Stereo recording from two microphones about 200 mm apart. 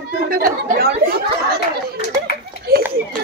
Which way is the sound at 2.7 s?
50° right (ahead or behind).